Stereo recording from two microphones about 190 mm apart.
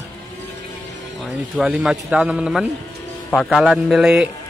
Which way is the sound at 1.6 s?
Centre (ahead or behind).